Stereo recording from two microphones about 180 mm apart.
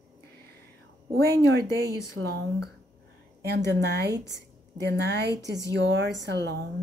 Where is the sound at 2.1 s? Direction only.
70° right (ahead or behind).